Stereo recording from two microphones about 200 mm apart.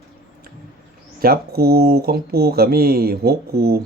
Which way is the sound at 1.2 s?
50° right (ahead or behind).